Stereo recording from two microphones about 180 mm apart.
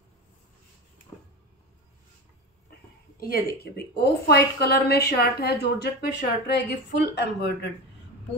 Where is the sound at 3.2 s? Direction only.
60° left (ahead or behind).